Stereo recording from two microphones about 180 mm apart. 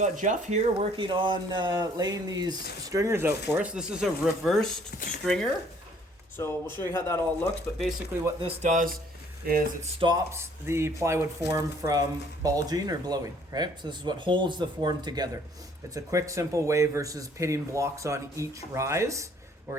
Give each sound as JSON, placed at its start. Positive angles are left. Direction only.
{"t": 0.0, "sound": "speech", "side_deg": -45}
{"t": 4.9, "sound": "speech", "side_deg": 50}
{"t": 5.2, "sound": "speech", "side_deg": 5}
{"t": 7.8, "sound": "speech", "side_deg": 0}
{"t": 8.4, "sound": "speech", "side_deg": -30}
{"t": 8.7, "sound": "speech", "side_deg": -45}
{"t": 9.8, "sound": "speech", "side_deg": -30}
{"t": 10.3, "sound": "speech", "side_deg": -15}